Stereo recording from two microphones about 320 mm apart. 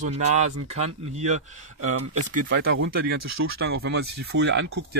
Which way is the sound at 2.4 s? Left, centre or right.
Right.